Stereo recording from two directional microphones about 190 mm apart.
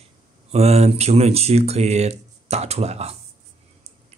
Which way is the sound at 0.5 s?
35° right (ahead or behind).